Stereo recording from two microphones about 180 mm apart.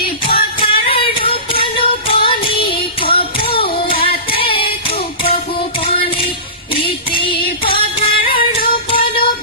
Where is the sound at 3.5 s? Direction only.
30° left (ahead or behind).